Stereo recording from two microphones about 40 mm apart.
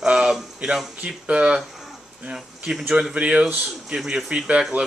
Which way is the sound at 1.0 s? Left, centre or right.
Right.